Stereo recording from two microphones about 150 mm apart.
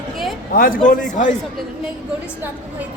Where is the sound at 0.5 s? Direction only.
70° left (ahead or behind); by 1.4 s 55° left (ahead or behind).